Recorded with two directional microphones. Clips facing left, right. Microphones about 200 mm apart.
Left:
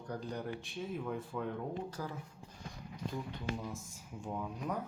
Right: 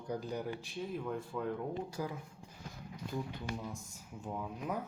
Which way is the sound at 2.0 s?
15° right (ahead or behind).